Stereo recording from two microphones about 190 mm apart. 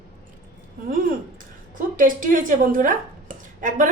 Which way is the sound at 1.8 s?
45° right (ahead or behind).